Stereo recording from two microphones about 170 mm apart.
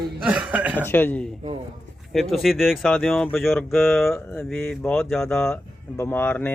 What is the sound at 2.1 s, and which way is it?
A man's voice, centre (ahead or behind).